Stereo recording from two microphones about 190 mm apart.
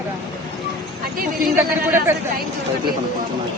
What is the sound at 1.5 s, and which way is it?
Speech, 10° right (ahead or behind).